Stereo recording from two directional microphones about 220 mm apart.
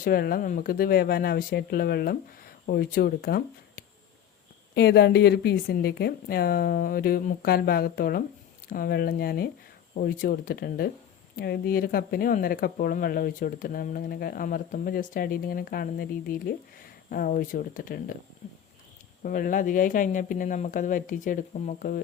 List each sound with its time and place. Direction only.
0.0 s speech: 40° left (ahead or behind)
19.2 s speech: 40° left (ahead or behind)